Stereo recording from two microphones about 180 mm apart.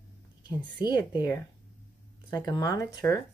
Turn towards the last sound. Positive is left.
turn(degrees=15)  # may be behind; listen again after turning